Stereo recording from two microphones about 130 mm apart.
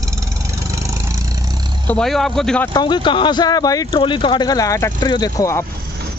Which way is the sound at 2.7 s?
35° left (ahead or behind).